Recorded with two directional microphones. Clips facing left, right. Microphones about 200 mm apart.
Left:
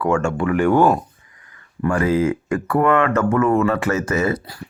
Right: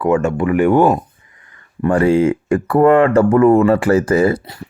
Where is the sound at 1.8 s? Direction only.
30° right (ahead or behind).